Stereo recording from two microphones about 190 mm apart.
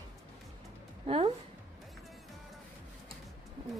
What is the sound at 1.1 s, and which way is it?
Speech, 30° right (ahead or behind).